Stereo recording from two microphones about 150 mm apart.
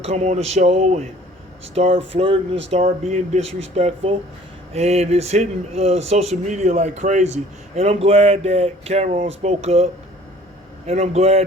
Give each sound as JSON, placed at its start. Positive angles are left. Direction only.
{"t": 0.0, "sound": "speech", "side_deg": -50}